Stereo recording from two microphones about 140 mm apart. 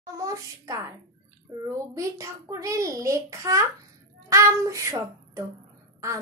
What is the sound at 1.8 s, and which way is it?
Child singing, 25° right (ahead or behind).